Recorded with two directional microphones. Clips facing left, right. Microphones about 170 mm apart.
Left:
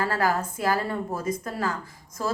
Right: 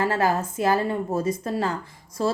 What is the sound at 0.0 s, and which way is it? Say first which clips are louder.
A woman's voice: right 2 dB; 25° right (ahead or behind).